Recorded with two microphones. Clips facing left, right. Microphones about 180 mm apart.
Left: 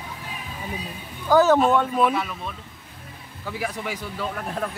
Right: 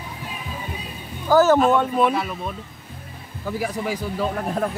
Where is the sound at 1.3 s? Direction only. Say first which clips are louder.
Right 1 dB; centre (ahead or behind).